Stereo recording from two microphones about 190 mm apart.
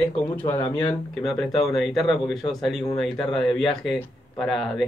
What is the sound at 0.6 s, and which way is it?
Speech, 25° left (ahead or behind).